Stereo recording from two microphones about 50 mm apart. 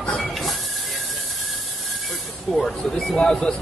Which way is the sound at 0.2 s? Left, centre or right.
Centre.